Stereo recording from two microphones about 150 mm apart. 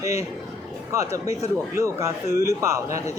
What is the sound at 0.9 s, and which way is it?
Speech, 20° right (ahead or behind).